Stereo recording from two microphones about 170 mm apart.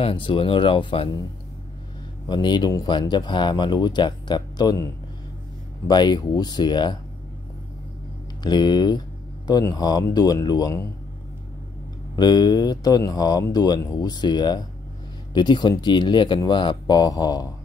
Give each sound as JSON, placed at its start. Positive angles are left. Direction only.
{"t": 0.0, "sound": "speech", "side_deg": 30}
{"t": 2.2, "sound": "speech", "side_deg": 25}
{"t": 8.4, "sound": "speech", "side_deg": 25}
{"t": 12.2, "sound": "speech", "side_deg": 25}